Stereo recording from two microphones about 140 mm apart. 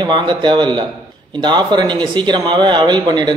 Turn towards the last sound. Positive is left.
turn(degrees=-30)  # may be behind; listen again after turning